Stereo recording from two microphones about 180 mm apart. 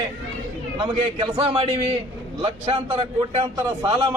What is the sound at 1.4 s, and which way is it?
A man's voice, 30° right (ahead or behind).